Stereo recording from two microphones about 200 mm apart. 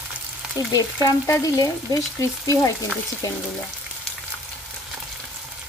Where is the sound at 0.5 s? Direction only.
15° left (ahead or behind).